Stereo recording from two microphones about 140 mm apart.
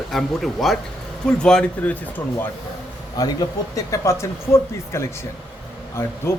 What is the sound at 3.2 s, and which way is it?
A man's voice, 25° left (ahead or behind).